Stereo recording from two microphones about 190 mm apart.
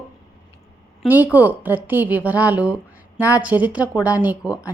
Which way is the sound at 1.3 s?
10° right (ahead or behind).